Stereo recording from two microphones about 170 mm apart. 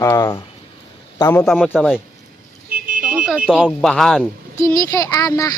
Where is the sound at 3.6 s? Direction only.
5° left (ahead or behind).